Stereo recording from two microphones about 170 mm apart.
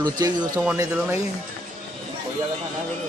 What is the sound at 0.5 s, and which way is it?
Speech, 10° right (ahead or behind).